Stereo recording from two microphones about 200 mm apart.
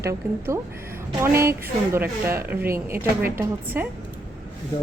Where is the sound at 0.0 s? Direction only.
15° right (ahead or behind).